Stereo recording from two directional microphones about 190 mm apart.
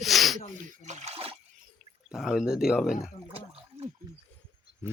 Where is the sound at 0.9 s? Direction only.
35° right (ahead or behind).